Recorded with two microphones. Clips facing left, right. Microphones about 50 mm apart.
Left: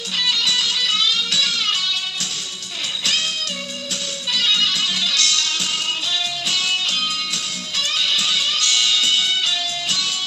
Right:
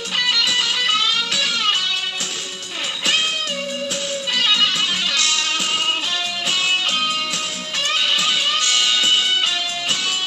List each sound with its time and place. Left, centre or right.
0.2 s music: right
4.3 s music: right
7.9 s music: right